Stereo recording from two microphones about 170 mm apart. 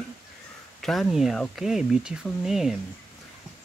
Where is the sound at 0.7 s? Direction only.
Centre (ahead or behind).